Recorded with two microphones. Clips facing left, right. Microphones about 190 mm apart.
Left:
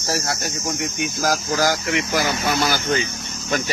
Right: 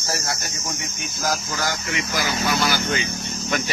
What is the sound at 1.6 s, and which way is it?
Speech, 65° left (ahead or behind).